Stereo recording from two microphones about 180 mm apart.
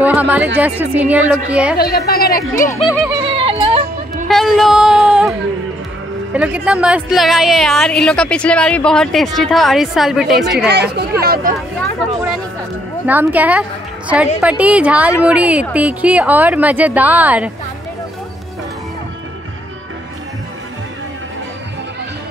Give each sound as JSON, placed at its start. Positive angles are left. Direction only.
{"t": 0.0, "sound": "speech", "side_deg": -10}
{"t": 1.8, "sound": "speech", "side_deg": 60}
{"t": 3.3, "sound": "music", "side_deg": -30}
{"t": 4.3, "sound": "a sound", "side_deg": 0}
{"t": 6.3, "sound": "a woman's voice", "side_deg": -5}
{"t": 10.7, "sound": "speech", "side_deg": -65}
{"t": 13.0, "sound": "speech", "side_deg": -10}